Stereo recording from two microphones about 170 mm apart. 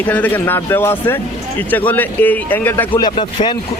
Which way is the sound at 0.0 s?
10° left (ahead or behind).